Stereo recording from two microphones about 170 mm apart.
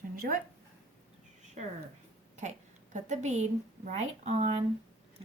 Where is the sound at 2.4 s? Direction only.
45° right (ahead or behind).